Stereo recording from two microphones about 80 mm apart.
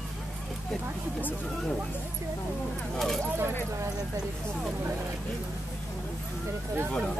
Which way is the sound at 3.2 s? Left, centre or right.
Right.